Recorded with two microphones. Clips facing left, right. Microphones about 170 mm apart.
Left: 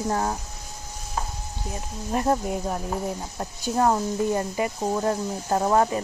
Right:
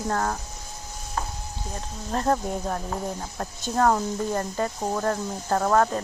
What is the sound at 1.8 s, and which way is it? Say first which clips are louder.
Speech: left 2 dB; 10° left (ahead or behind).